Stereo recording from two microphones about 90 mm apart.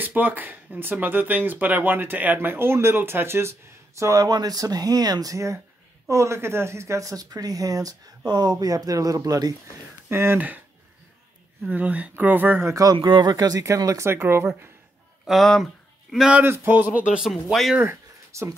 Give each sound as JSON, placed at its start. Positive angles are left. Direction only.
{"t": 0.0, "sound": "speech", "side_deg": -20}
{"t": 4.0, "sound": "speech", "side_deg": -40}
{"t": 10.0, "sound": "speech", "side_deg": -25}
{"t": 11.7, "sound": "speech", "side_deg": -15}
{"t": 12.6, "sound": "speech", "side_deg": -40}
{"t": 12.9, "sound": "speech", "side_deg": -60}
{"t": 15.2, "sound": "speech", "side_deg": 0}
{"t": 16.4, "sound": "speech", "side_deg": -25}
{"t": 17.3, "sound": "speech", "side_deg": 0}
{"t": 17.7, "sound": "a sound", "side_deg": -30}